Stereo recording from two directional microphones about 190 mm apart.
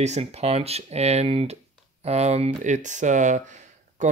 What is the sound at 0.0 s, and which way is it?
Speech, 35° right (ahead or behind).